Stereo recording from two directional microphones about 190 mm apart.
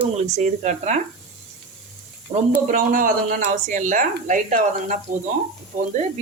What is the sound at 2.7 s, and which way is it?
Speech, 45° right (ahead or behind).